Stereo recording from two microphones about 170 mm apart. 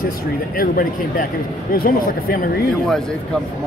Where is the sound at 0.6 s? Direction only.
60° left (ahead or behind).